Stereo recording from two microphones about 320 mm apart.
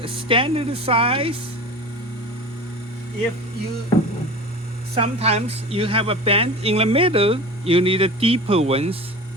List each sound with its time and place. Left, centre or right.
0.0 s speech: centre
4.9 s speech: centre